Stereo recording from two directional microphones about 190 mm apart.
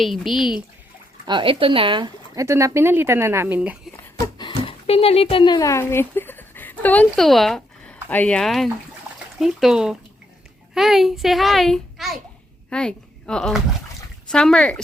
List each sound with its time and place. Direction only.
0.0 s speech: centre (ahead or behind)
1.2 s speech: 25° right (ahead or behind); by 3.8 s 10° right (ahead or behind)
3.9 s a child's voice: 20° left (ahead or behind); by 14.8 s centre (ahead or behind)